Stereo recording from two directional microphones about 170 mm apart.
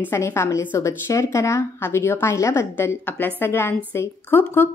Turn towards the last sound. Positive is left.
turn(degrees=10)  # may be behind; listen again after turning